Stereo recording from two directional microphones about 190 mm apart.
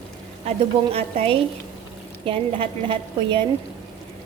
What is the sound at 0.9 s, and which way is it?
A woman's voice, 30° right (ahead or behind).